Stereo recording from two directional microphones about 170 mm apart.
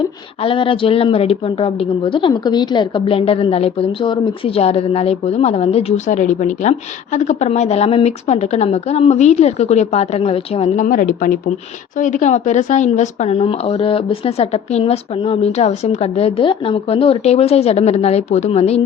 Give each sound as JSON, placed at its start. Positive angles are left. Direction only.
{"t": 0.0, "sound": "a woman's voice", "side_deg": 30}
{"t": 10.8, "sound": "a woman's voice", "side_deg": 55}